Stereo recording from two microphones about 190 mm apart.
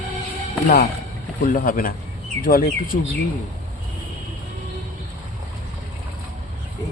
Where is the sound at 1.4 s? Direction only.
45° left (ahead or behind).